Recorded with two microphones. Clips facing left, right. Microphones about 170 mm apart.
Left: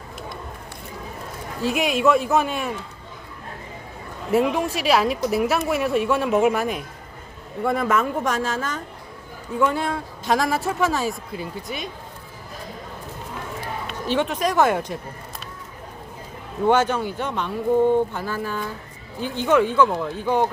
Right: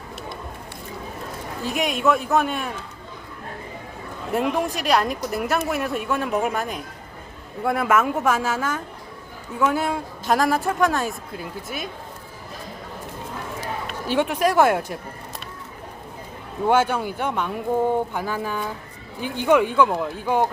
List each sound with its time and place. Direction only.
1.6 s speech: centre (ahead or behind)
4.3 s speech: centre (ahead or behind)
14.1 s speech: 10° right (ahead or behind)
16.6 s speech: 10° right (ahead or behind)